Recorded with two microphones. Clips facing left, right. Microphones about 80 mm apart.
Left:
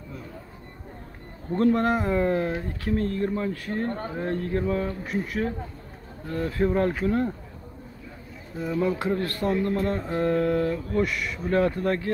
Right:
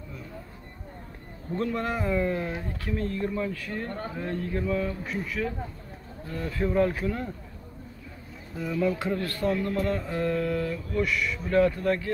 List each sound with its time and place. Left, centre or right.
1.6 s speech: left
6.3 s speech: left
8.5 s speech: left
8.9 s speech: left
9.5 s speech: left